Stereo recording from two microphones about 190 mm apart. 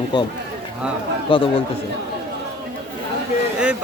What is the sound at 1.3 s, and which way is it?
Speech, 25° left (ahead or behind).